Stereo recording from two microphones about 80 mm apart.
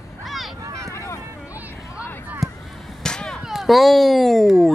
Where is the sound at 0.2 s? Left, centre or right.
Centre.